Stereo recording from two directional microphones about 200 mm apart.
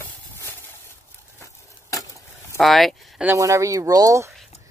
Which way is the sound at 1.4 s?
15° left (ahead or behind).